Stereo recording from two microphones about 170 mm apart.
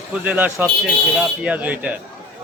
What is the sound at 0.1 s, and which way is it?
A man's voice, 10° right (ahead or behind).